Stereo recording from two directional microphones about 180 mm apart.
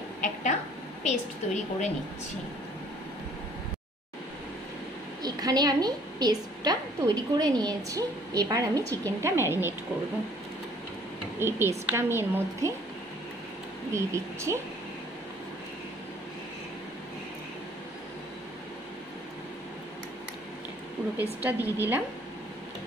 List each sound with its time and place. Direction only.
0.2 s a sound: 45° left (ahead or behind)
1.0 s a woman's voice: 40° left (ahead or behind)
5.2 s a woman's voice: 20° right (ahead or behind)
11.3 s a woman's voice: 15° right (ahead or behind)
13.9 s a woman's voice: 15° right (ahead or behind)
21.2 s a woman's voice: 10° right (ahead or behind)